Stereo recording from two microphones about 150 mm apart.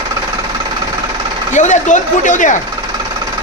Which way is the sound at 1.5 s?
55° left (ahead or behind).